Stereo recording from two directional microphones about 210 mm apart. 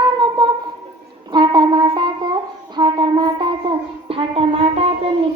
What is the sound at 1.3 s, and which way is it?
Music, 20° right (ahead or behind).